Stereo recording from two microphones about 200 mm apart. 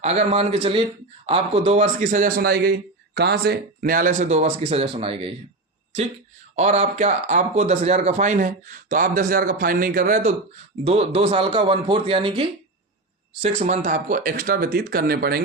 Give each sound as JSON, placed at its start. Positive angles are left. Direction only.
{"t": 0.0, "sound": "a man's voice", "side_deg": -30}
{"t": 6.6, "sound": "a man's voice", "side_deg": -35}
{"t": 10.8, "sound": "speech", "side_deg": -30}